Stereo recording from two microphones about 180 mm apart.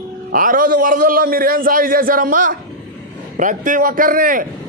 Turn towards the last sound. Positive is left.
turn(degrees=-50)  # may be behind; listen again after turning